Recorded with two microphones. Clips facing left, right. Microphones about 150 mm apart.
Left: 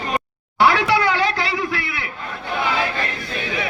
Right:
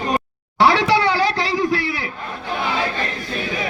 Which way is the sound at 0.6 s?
35° right (ahead or behind).